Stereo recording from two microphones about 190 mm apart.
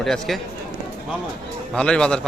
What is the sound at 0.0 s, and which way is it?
Speech, centre (ahead or behind).